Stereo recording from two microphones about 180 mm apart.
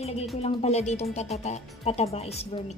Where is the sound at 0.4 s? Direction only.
35° left (ahead or behind).